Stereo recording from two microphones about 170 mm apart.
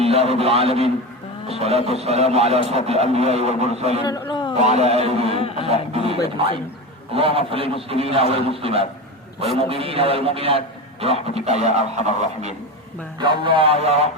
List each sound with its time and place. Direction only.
0.0 s a man's voice: 35° right (ahead or behind)
4.0 s a man's voice: 25° left (ahead or behind)
4.5 s a man's voice: 40° right (ahead or behind)
5.3 s speech: 35° left (ahead or behind)
5.9 s a man's voice: 35° right (ahead or behind)
13.1 s a man's voice: 30° right (ahead or behind)